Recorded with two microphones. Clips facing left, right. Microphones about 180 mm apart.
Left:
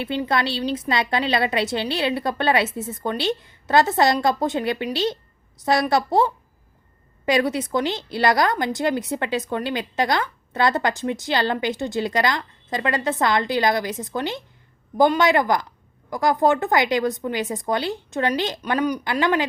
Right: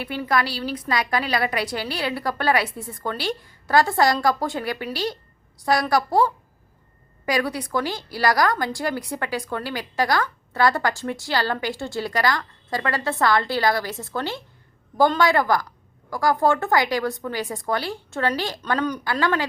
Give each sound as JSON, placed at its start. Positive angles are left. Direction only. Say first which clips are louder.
{"t": 0.0, "sound": "a woman's voice", "louder": "left 1 dB", "side_deg": 25}